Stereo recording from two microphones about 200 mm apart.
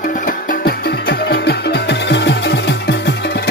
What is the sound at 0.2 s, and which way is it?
Music, 45° left (ahead or behind).